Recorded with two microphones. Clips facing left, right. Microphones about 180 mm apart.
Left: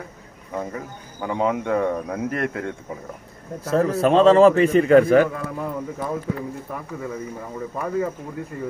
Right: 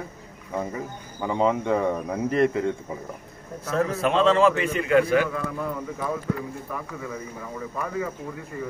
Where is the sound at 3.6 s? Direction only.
35° left (ahead or behind).